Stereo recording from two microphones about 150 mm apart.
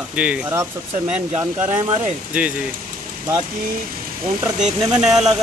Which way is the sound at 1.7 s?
35° right (ahead or behind).